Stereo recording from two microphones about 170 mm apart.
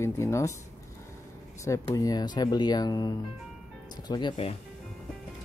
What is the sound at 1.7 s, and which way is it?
Speech, 20° left (ahead or behind).